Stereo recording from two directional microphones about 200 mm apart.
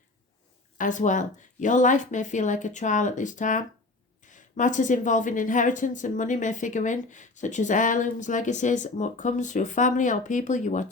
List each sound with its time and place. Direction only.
0.8 s a woman's voice: 40° left (ahead or behind)